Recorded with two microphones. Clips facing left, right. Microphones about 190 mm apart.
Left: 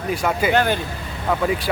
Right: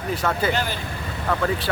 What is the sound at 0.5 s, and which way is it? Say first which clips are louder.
Speech: left 8 dB; 60° left (ahead or behind).